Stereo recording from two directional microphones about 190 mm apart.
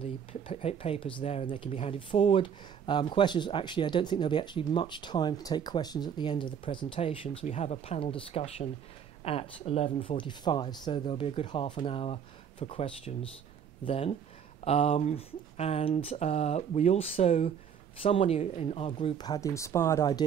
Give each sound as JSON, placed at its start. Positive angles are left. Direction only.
{"t": 0.0, "sound": "speech", "side_deg": 30}